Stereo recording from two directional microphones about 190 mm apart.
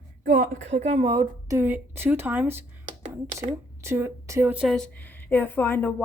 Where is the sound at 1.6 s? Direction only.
10° right (ahead or behind).